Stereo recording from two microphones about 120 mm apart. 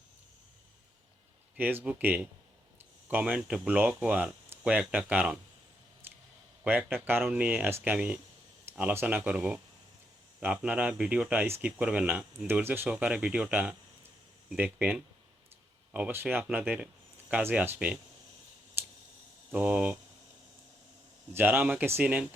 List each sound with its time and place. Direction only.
1.5 s speech: 15° right (ahead or behind)
6.0 s a sound: 15° right (ahead or behind)
6.7 s speech: 15° right (ahead or behind)
18.8 s a sound: 20° right (ahead or behind)
19.5 s speech: 10° right (ahead or behind)
21.3 s speech: 15° right (ahead or behind)